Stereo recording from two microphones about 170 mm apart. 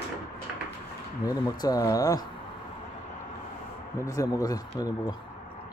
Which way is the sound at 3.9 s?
20° left (ahead or behind).